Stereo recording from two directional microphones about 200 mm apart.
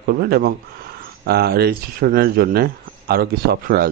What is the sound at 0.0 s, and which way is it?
Speech, 50° right (ahead or behind).